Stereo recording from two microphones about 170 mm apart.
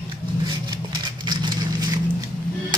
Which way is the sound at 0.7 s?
25° right (ahead or behind).